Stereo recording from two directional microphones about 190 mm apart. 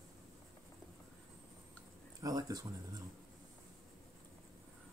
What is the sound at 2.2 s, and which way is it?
Speech, 20° right (ahead or behind).